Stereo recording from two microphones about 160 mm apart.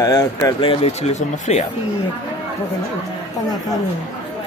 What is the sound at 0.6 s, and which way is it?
Speech, 40° left (ahead or behind).